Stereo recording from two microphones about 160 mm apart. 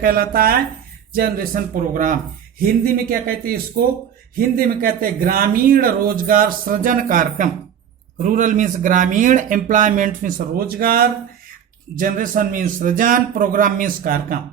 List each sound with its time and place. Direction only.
0.0 s speech: 65° right (ahead or behind)